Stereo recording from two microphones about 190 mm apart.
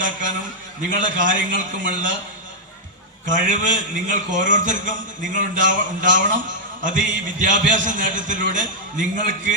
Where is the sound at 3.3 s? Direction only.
40° right (ahead or behind).